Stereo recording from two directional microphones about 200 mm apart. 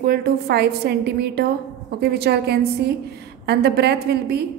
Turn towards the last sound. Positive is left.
turn(degrees=-55)  # may be behind; listen again after turning